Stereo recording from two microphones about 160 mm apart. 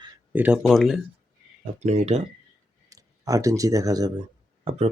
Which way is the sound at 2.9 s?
20° right (ahead or behind).